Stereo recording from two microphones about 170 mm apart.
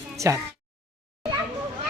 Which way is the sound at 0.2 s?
20° right (ahead or behind).